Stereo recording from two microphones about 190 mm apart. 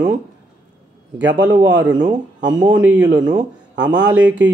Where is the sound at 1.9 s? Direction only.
20° right (ahead or behind).